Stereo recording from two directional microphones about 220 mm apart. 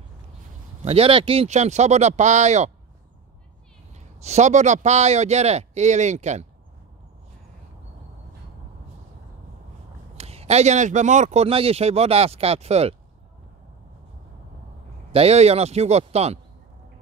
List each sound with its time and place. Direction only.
0.8 s a man's voice: 25° right (ahead or behind)
3.9 s a man's voice: 30° right (ahead or behind)
10.1 s speech: 30° right (ahead or behind)
15.1 s speech: 30° right (ahead or behind)